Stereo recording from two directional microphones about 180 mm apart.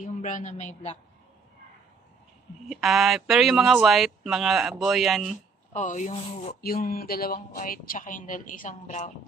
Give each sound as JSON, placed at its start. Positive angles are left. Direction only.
{"t": 0.0, "sound": "a man's voice", "side_deg": 45}
{"t": 2.7, "sound": "speech", "side_deg": 0}
{"t": 5.7, "sound": "a woman's voice", "side_deg": 40}
{"t": 6.6, "sound": "a woman's voice", "side_deg": 55}